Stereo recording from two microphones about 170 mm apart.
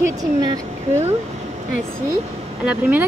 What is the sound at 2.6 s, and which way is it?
Speech, 10° right (ahead or behind).